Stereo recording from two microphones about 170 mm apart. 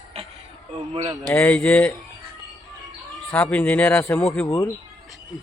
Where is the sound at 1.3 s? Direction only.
10° left (ahead or behind).